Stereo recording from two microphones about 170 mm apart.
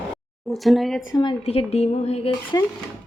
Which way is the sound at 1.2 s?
35° left (ahead or behind).